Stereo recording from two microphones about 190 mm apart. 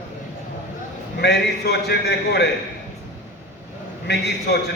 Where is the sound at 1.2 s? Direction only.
60° left (ahead or behind).